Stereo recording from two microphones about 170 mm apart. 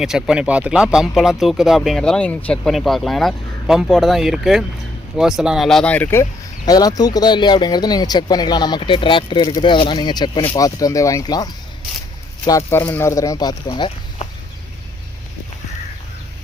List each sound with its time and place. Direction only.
0.0 s speech: 5° right (ahead or behind)
6.7 s speech: 20° left (ahead or behind)